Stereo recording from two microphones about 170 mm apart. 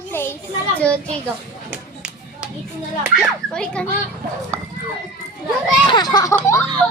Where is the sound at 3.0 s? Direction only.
5° right (ahead or behind).